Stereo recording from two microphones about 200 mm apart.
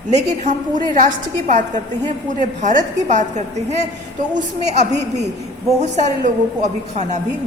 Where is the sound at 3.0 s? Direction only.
35° right (ahead or behind).